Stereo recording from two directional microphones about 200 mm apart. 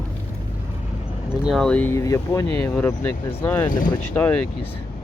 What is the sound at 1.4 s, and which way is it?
Speech, centre (ahead or behind).